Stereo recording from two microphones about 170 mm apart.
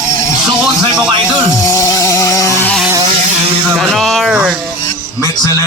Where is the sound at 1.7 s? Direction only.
20° left (ahead or behind).